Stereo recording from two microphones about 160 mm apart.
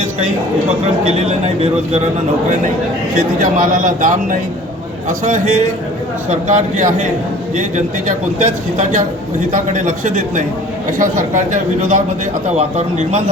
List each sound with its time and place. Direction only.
1.2 s speech: 45° right (ahead or behind)
3.2 s speech: 55° right (ahead or behind)